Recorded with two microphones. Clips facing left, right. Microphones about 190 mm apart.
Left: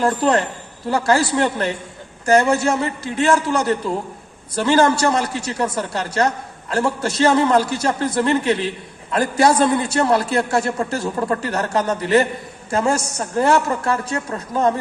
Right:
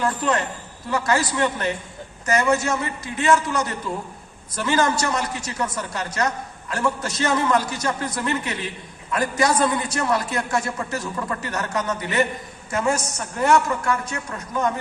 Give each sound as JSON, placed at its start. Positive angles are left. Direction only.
{"t": 0.0, "sound": "a man's voice", "side_deg": 35}